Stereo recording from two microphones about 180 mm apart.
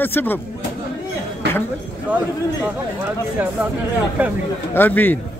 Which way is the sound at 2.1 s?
10° right (ahead or behind).